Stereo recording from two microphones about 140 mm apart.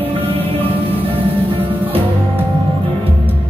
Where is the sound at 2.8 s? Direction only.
40° right (ahead or behind).